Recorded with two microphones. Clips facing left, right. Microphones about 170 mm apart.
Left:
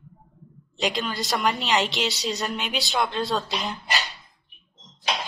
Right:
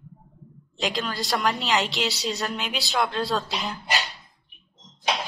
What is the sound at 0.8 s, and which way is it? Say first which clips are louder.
A woman's voice: left 1 dB; centre (ahead or behind).